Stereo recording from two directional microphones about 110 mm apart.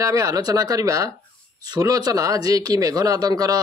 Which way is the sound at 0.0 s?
30° right (ahead or behind).